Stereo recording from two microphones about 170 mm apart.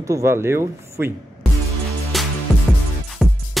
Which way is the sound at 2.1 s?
Centre (ahead or behind).